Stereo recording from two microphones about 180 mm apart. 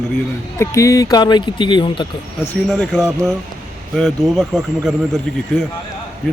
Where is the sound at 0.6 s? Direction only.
15° left (ahead or behind).